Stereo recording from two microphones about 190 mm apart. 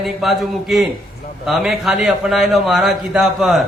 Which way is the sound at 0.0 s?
Centre (ahead or behind).